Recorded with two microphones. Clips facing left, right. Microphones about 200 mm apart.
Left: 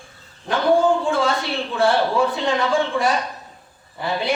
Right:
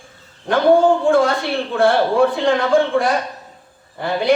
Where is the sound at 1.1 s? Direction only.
55° right (ahead or behind).